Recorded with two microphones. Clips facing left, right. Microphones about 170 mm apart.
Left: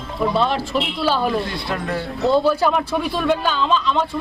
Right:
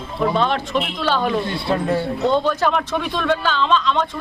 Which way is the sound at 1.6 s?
30° right (ahead or behind).